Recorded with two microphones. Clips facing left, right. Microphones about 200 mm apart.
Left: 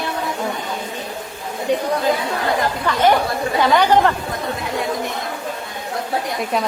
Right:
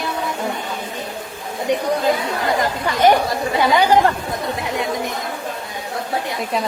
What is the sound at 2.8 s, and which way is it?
Speech, 15° right (ahead or behind).